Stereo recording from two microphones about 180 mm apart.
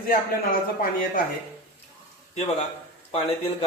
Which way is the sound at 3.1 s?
35° left (ahead or behind).